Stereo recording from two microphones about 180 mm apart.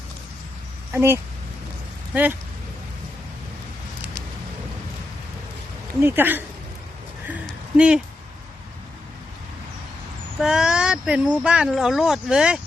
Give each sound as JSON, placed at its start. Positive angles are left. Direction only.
{"t": 0.9, "sound": "speech", "side_deg": -15}
{"t": 6.0, "sound": "speech", "side_deg": -10}
{"t": 7.4, "sound": "a sound", "side_deg": -5}
{"t": 10.4, "sound": "speech", "side_deg": -5}